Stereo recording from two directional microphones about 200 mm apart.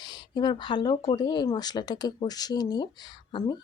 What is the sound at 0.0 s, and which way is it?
Speech, 20° left (ahead or behind).